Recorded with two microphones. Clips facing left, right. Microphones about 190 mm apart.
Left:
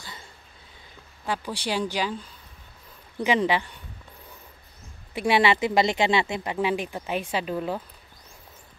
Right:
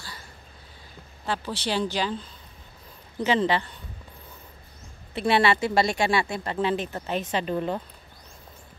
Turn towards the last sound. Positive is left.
turn(degrees=5)  # may be behind; listen again after turning